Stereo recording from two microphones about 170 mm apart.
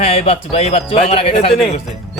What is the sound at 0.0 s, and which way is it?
Speech, 35° left (ahead or behind).